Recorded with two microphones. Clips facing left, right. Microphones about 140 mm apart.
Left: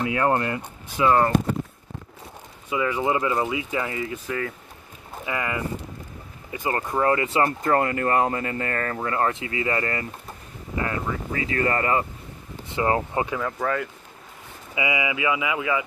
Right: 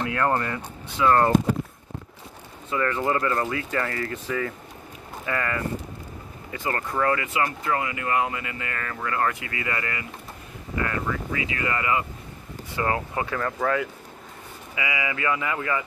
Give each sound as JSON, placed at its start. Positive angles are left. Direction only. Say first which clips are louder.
{"t": 0.1, "sound": "speech", "louder": "left 2 dB", "side_deg": 15}
{"t": 2.7, "sound": "speech", "louder": "left 1 dB", "side_deg": 10}
{"t": 5.2, "sound": "speech", "louder": "even", "side_deg": 15}
{"t": 10.8, "sound": "speech", "louder": "even", "side_deg": 25}
{"t": 11.3, "sound": "speech", "louder": "left 8 dB", "side_deg": 40}
{"t": 12.7, "sound": "speech", "louder": "left 3 dB", "side_deg": 25}
{"t": 13.4, "sound": "speech", "louder": "right 1 dB", "side_deg": 0}
{"t": 14.8, "sound": "speech", "louder": "left 3 dB", "side_deg": 20}